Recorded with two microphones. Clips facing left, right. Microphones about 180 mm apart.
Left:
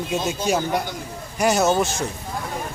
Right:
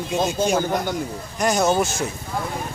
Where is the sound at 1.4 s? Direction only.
5° left (ahead or behind).